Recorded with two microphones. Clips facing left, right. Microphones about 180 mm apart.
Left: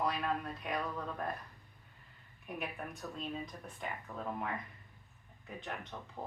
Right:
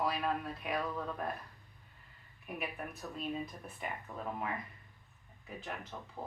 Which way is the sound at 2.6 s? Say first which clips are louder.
Even; 5° right (ahead or behind).